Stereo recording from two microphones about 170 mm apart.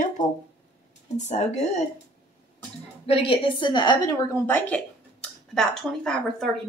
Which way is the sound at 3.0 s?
35° left (ahead or behind).